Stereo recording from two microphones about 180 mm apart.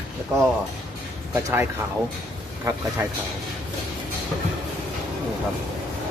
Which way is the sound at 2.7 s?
20° right (ahead or behind).